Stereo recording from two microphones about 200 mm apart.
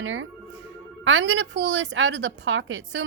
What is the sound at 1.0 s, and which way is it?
A woman's voice, 65° right (ahead or behind).